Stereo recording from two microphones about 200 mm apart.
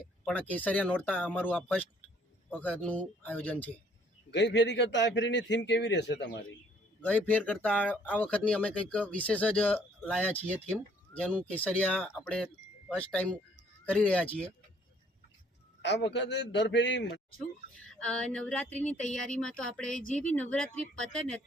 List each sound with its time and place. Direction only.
0.0 s speech: 5° left (ahead or behind)
4.3 s a man's voice: 60° left (ahead or behind)
7.0 s speech: 5° left (ahead or behind)
15.8 s a man's voice: 60° left (ahead or behind)
17.7 s a sound: 5° left (ahead or behind)